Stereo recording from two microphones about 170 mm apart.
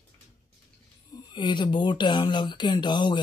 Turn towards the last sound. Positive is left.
turn(degrees=25)  # may be behind; listen again after turning